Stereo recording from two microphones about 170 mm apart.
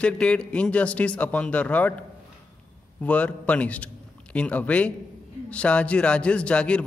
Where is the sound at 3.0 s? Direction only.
10° left (ahead or behind).